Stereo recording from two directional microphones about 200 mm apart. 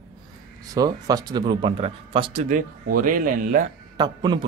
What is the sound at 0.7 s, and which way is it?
A man's voice, 20° right (ahead or behind).